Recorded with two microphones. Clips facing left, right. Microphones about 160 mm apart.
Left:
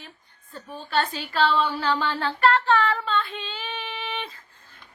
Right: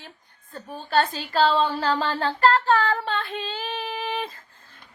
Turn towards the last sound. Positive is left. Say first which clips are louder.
# right 4 dB
turn(degrees=-40)  # may be behind; listen again after turning